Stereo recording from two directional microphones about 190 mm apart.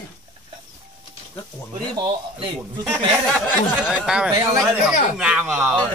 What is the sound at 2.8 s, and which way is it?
Speech, centre (ahead or behind).